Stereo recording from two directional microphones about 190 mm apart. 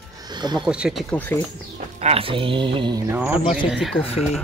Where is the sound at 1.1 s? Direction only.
10° left (ahead or behind).